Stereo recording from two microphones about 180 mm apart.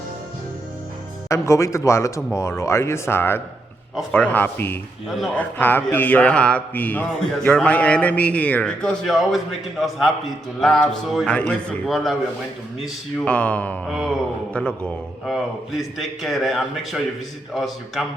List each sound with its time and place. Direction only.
1.3 s a man's voice: 15° left (ahead or behind); by 18.0 s centre (ahead or behind)